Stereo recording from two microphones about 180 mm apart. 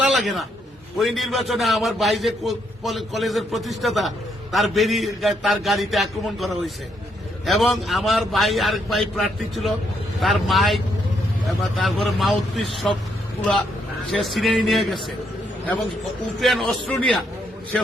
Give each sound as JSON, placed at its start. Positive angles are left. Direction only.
{"t": 0.0, "sound": "a sound", "side_deg": 0}
{"t": 0.9, "sound": "a man's voice", "side_deg": 0}
{"t": 14.1, "sound": "a man's voice", "side_deg": 0}
{"t": 16.4, "sound": "a man's voice", "side_deg": 0}